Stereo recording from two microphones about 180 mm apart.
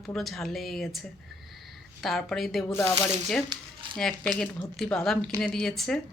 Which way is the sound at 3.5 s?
25° right (ahead or behind).